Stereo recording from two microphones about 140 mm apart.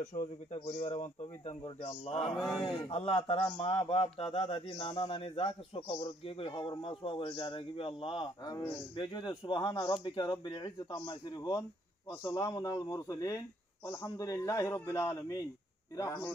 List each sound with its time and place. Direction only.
0.0 s a man's voice: 60° left (ahead or behind)
0.7 s a man's voice: 45° left (ahead or behind); by 16.3 s 25° left (ahead or behind)